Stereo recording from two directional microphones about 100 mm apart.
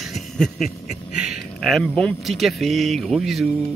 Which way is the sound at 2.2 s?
Centre (ahead or behind).